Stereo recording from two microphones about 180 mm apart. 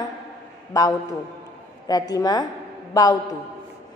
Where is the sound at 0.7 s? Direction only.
20° left (ahead or behind).